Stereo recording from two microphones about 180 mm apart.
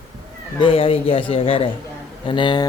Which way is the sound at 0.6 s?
30° left (ahead or behind).